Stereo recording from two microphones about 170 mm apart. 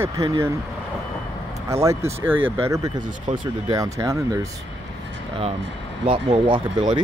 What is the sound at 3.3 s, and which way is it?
Speech, 45° right (ahead or behind).